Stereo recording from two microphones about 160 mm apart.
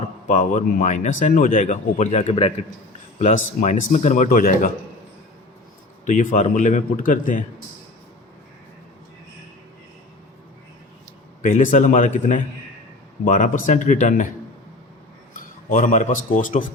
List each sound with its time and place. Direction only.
0.3 s speech: 50° left (ahead or behind)
6.1 s speech: 50° left (ahead or behind)
11.4 s speech: 55° left (ahead or behind)
15.7 s a man's voice: 55° left (ahead or behind)